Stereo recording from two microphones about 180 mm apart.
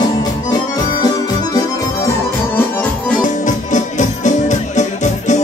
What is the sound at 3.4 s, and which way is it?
Music, 45° left (ahead or behind).